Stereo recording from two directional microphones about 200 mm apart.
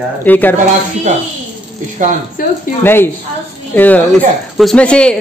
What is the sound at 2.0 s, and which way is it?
Speech, 40° right (ahead or behind).